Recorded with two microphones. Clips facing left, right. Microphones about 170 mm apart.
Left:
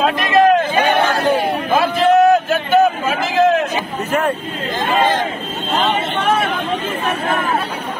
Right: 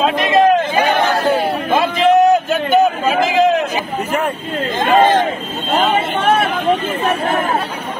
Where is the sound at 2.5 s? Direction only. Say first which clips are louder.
Even; 15° right (ahead or behind).